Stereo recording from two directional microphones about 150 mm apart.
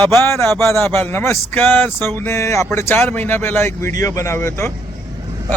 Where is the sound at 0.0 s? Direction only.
5° left (ahead or behind).